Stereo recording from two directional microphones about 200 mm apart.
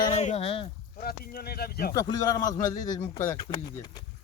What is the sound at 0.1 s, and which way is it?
Speech, 30° left (ahead or behind).